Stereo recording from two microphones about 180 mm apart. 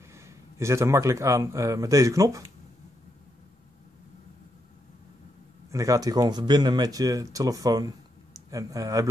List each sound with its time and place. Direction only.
0.1 s a man's voice: 15° right (ahead or behind)
5.7 s speech: 20° right (ahead or behind)